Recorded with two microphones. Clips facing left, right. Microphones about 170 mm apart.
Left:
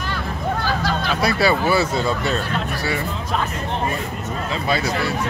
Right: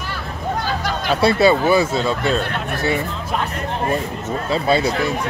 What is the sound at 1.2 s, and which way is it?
Speech, 20° right (ahead or behind).